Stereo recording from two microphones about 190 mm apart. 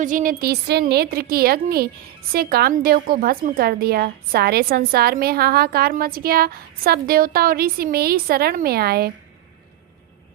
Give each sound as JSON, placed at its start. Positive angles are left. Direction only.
{"t": 0.0, "sound": "a woman's voice", "side_deg": -45}